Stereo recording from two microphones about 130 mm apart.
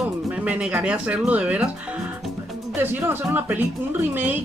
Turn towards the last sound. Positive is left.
turn(degrees=-15)  # may be behind; listen again after turning